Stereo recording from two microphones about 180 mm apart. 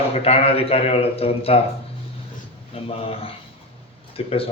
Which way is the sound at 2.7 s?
30° left (ahead or behind).